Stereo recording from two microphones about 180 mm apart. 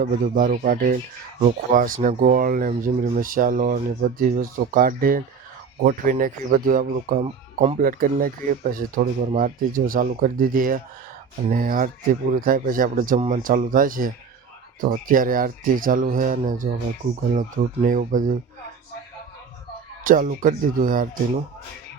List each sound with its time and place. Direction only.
0.0 s speech: 50° right (ahead or behind)
7.3 s speech: 30° right (ahead or behind)
7.8 s speech: 50° right (ahead or behind)
20.1 s speech: 50° right (ahead or behind)